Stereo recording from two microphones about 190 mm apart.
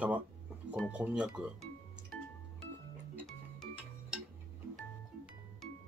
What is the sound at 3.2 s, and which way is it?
Music, centre (ahead or behind).